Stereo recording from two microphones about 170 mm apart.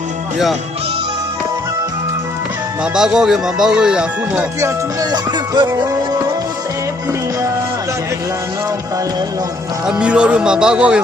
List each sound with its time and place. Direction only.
2.8 s speech: 5° right (ahead or behind)
4.6 s music: 20° right (ahead or behind)
9.8 s speech: 5° right (ahead or behind)